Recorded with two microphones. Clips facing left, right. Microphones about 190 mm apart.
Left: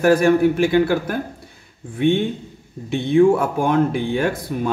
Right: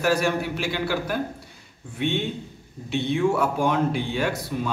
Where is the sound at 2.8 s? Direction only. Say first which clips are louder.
Left 8 dB; 50° left (ahead or behind).